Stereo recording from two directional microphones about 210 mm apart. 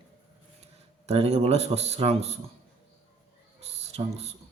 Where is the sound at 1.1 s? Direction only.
30° right (ahead or behind).